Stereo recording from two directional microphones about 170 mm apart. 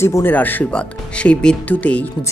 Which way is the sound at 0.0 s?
15° left (ahead or behind).